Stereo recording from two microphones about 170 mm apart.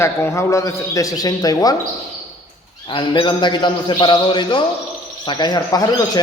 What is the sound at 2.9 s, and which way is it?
Speech, 30° left (ahead or behind).